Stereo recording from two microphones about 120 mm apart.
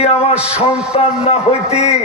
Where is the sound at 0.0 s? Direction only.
60° left (ahead or behind).